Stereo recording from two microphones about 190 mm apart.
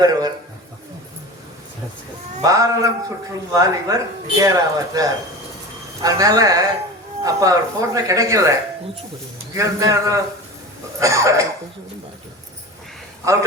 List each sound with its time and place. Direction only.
0.0 s speech: 20° right (ahead or behind)
2.4 s a man's voice: 20° right (ahead or behind)
9.6 s a man's voice: 15° right (ahead or behind)
13.2 s a man's voice: 15° right (ahead or behind)